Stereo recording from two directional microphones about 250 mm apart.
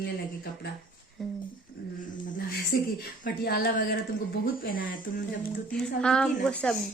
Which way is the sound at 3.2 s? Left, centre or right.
Left.